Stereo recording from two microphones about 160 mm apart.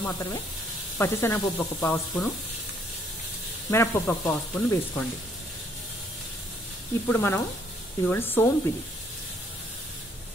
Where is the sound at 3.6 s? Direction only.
15° left (ahead or behind).